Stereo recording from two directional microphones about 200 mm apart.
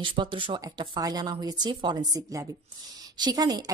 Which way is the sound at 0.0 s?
25° right (ahead or behind).